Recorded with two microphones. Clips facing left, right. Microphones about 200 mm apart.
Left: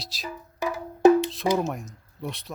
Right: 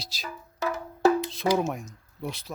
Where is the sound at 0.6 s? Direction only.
15° left (ahead or behind).